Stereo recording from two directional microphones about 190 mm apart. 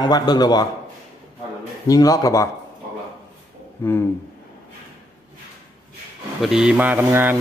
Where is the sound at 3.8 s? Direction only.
10° left (ahead or behind).